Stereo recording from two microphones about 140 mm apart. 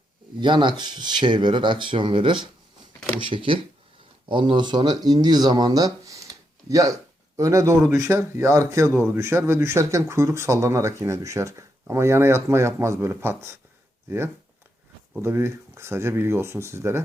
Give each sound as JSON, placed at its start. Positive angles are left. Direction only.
{"t": 0.3, "sound": "speech", "side_deg": -35}
{"t": 15.2, "sound": "speech", "side_deg": -15}